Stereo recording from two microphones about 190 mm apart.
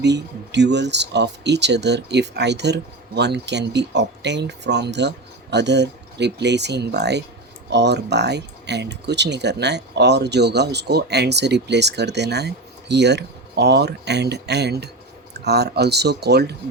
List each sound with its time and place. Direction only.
0.0 s speech: 65° right (ahead or behind)